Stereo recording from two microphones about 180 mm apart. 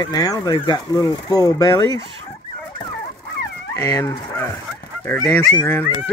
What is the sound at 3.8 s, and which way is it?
Speech, 15° left (ahead or behind).